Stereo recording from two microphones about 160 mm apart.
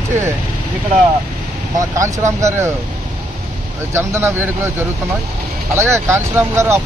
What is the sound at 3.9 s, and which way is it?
Speech, 15° right (ahead or behind).